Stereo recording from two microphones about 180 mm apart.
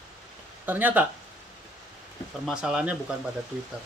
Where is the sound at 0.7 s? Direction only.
10° right (ahead or behind).